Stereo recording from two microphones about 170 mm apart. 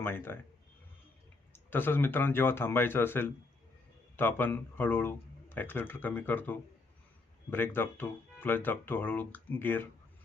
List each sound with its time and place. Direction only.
0.0 s speech: 15° left (ahead or behind)
1.5 s speech: 10° left (ahead or behind)